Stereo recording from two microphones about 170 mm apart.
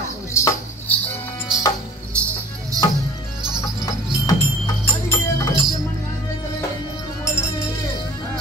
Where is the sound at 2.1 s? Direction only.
15° right (ahead or behind).